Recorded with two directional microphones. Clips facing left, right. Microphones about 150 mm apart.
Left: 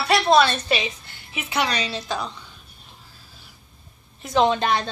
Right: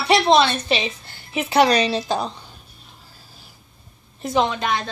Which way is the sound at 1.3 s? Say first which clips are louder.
Right 9 dB; 40° right (ahead or behind).